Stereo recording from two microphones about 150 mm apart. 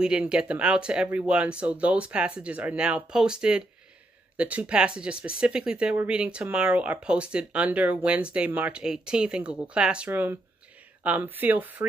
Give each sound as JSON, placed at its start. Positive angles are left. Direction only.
{"t": 0.0, "sound": "speech", "side_deg": -5}